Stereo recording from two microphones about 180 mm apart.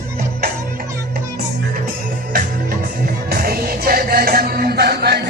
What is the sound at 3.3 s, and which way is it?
Music, 55° right (ahead or behind).